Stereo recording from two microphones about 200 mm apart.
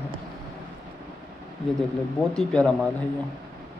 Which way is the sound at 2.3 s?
5° left (ahead or behind).